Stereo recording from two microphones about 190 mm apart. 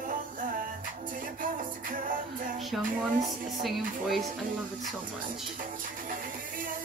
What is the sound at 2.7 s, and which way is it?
Speech, centre (ahead or behind).